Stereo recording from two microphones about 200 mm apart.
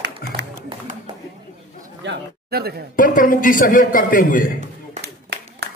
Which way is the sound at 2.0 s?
55° right (ahead or behind).